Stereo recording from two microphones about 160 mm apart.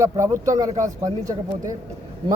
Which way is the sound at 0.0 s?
20° right (ahead or behind).